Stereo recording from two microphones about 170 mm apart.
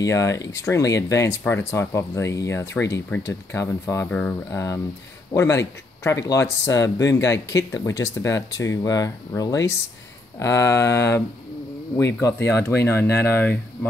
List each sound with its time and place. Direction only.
0.0 s speech: 20° left (ahead or behind)